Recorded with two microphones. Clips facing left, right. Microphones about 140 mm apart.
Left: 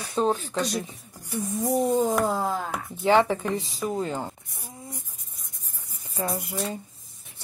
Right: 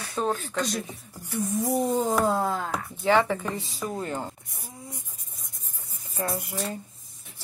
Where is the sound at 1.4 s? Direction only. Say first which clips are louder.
Left 1 dB; centre (ahead or behind).